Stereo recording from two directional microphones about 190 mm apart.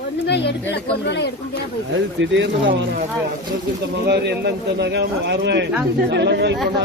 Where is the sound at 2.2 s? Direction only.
70° right (ahead or behind).